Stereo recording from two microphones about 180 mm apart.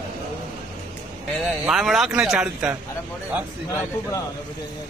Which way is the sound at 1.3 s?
Centre (ahead or behind).